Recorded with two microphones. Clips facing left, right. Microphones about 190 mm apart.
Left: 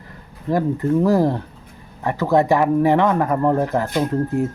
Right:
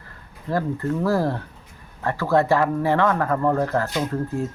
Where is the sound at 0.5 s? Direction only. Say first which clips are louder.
Left 5 dB; 15° left (ahead or behind).